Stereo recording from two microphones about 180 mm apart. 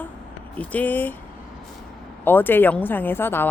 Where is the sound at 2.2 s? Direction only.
10° left (ahead or behind).